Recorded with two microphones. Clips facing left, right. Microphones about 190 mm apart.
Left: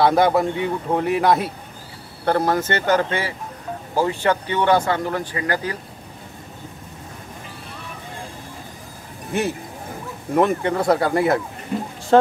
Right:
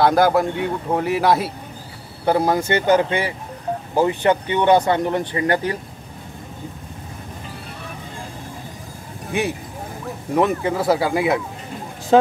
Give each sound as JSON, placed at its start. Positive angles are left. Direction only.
{"t": 0.0, "sound": "a man's voice", "side_deg": 0}
{"t": 9.3, "sound": "a man's voice", "side_deg": 0}